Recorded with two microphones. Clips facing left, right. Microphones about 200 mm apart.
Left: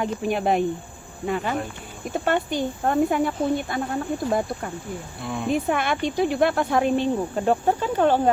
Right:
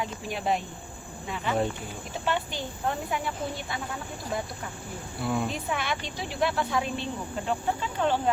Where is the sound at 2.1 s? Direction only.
50° left (ahead or behind).